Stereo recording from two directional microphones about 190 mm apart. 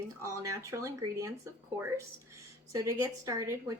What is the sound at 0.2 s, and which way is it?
Speech, 15° right (ahead or behind).